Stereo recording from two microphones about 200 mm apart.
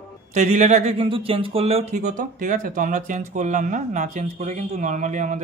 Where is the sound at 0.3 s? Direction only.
35° right (ahead or behind).